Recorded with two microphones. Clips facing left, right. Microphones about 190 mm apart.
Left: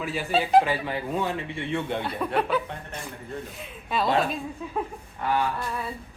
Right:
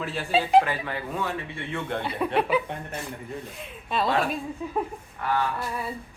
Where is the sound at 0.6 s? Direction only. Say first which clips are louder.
Left 2 dB; 20° left (ahead or behind).